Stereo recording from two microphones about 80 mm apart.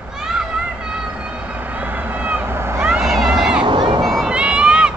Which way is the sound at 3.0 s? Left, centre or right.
Centre.